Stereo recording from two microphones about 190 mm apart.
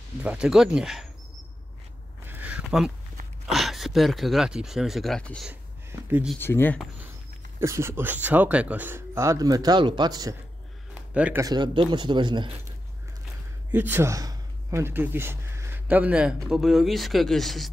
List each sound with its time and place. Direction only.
0.2 s speech: 5° right (ahead or behind)
2.2 s a sound: 10° right (ahead or behind)
3.5 s speech: centre (ahead or behind)
5.5 s a sound: 10° right (ahead or behind)
6.4 s speech: 10° left (ahead or behind)
7.6 s speech: 15° right (ahead or behind)
11.1 s speech: 5° right (ahead or behind)
11.4 s speech: 25° right (ahead or behind)
13.7 s speech: 10° right (ahead or behind)